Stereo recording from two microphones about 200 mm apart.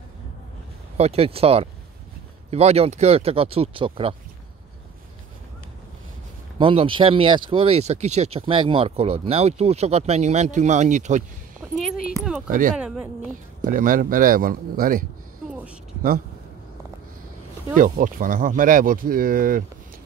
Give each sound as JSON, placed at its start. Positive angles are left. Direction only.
{"t": 0.9, "sound": "speech", "side_deg": -30}
{"t": 6.6, "sound": "speech", "side_deg": -25}
{"t": 11.7, "sound": "music", "side_deg": 0}
{"t": 12.1, "sound": "speech", "side_deg": -5}
{"t": 12.4, "sound": "speech", "side_deg": -45}
{"t": 12.7, "sound": "speech", "side_deg": -5}
{"t": 13.7, "sound": "speech", "side_deg": -45}
{"t": 15.4, "sound": "a sound", "side_deg": 0}
{"t": 17.7, "sound": "speech", "side_deg": -40}